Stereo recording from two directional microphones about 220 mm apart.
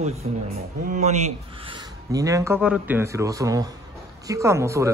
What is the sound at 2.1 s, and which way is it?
Speech, 15° right (ahead or behind).